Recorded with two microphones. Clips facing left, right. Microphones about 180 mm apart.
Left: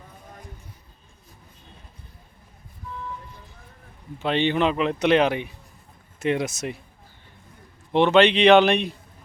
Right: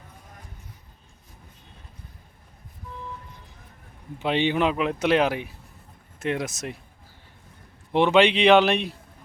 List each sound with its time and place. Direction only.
4.2 s speech: 10° right (ahead or behind)
7.9 s speech: 10° right (ahead or behind)